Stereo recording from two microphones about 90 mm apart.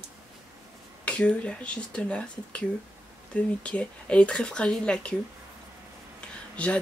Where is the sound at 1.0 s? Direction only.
15° left (ahead or behind).